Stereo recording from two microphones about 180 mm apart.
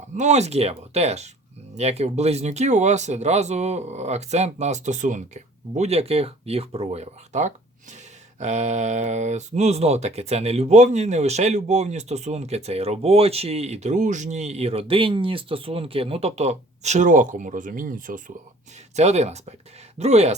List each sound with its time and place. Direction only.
0.2 s speech: 40° right (ahead or behind)
18.9 s speech: 40° right (ahead or behind)